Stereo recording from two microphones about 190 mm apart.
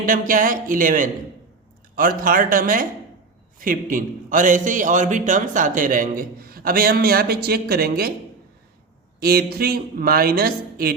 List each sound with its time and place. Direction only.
0.0 s a man's voice: 45° right (ahead or behind)
9.2 s a man's voice: 55° right (ahead or behind)